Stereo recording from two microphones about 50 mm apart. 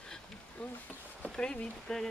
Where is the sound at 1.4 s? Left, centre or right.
Centre.